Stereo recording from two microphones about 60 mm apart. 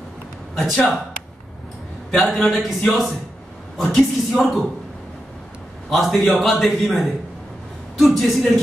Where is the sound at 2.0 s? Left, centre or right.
Centre.